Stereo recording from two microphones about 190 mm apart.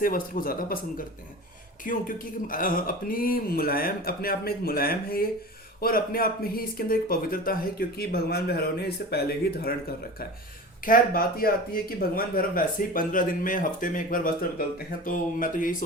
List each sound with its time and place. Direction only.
0.0 s speech: 50° left (ahead or behind)
10.8 s speech: 50° left (ahead or behind)